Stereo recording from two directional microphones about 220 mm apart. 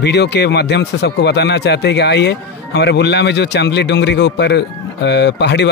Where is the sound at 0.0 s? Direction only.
50° left (ahead or behind).